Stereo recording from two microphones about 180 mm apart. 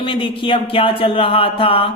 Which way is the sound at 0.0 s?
30° left (ahead or behind).